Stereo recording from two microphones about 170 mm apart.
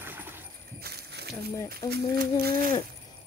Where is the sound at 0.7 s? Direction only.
70° right (ahead or behind).